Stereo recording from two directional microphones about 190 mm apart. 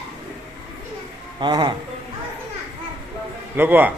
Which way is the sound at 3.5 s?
10° right (ahead or behind).